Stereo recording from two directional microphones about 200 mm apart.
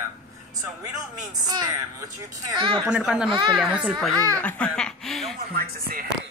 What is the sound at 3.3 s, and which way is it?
Speech, 25° right (ahead or behind).